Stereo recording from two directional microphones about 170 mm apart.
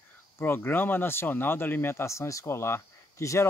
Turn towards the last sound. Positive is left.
turn(degrees=15)  # may be behind; listen again after turning